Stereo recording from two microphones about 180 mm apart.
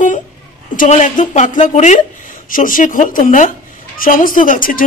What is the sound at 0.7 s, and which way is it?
Speech, 40° left (ahead or behind).